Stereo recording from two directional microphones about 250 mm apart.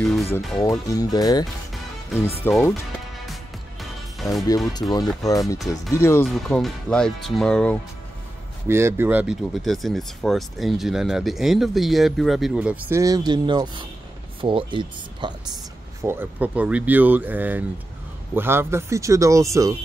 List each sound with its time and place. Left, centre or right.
0.0 s speech: centre
0.6 s speech: centre
2.4 s speech: centre
4.2 s speech: centre
4.7 s speech: centre
6.2 s speech: centre
8.6 s speech: centre
16.0 s speech: centre